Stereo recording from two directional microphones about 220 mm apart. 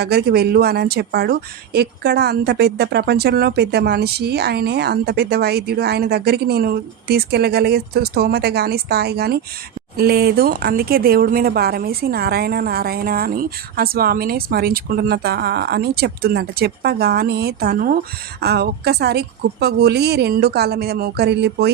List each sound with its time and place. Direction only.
0.0 s speech: 45° right (ahead or behind)